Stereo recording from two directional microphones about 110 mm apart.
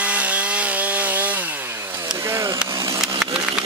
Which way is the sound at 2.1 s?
25° right (ahead or behind).